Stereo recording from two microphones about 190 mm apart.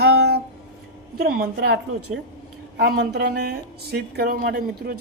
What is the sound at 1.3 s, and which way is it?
Speech, 55° right (ahead or behind).